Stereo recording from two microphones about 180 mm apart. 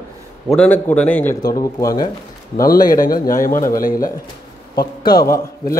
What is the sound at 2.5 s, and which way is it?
Speech, 55° left (ahead or behind).